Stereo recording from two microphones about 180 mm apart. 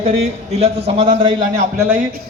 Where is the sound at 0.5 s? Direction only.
35° right (ahead or behind).